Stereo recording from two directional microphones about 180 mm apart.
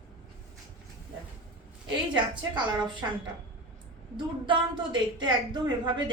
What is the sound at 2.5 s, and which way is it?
Speech, 25° right (ahead or behind).